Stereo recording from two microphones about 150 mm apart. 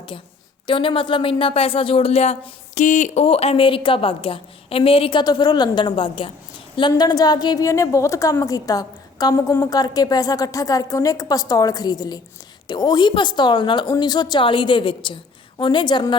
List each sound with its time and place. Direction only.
0.7 s a woman's voice: 35° left (ahead or behind); by 3.2 s 55° left (ahead or behind)
3.2 s a woman's voice: 40° left (ahead or behind)